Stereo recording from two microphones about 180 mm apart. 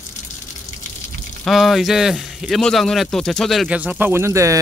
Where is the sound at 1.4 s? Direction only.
Centre (ahead or behind).